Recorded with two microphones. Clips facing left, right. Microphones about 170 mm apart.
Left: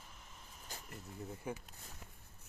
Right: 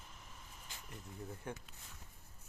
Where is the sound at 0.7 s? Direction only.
40° left (ahead or behind).